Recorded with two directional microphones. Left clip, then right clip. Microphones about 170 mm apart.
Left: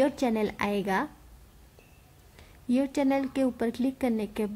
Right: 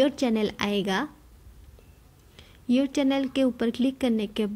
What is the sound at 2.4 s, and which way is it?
A woman's voice, 10° right (ahead or behind).